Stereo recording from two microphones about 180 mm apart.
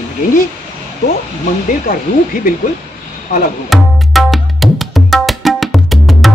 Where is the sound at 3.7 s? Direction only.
Centre (ahead or behind).